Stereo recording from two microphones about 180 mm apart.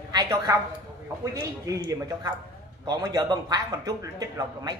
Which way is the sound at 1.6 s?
20° right (ahead or behind).